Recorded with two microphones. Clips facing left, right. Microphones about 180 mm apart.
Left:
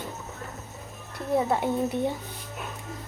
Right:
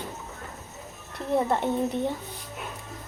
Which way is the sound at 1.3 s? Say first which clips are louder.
Even; 5° left (ahead or behind).